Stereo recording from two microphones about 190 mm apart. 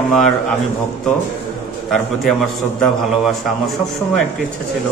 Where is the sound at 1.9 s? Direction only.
Centre (ahead or behind).